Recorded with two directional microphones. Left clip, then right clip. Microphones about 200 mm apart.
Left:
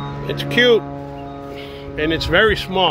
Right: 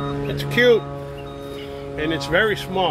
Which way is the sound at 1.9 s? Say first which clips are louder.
Left 4 dB; 35° left (ahead or behind).